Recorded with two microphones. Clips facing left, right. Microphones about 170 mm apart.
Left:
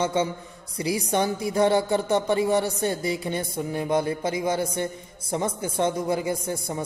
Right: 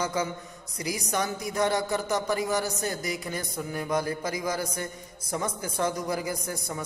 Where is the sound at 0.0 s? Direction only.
25° left (ahead or behind).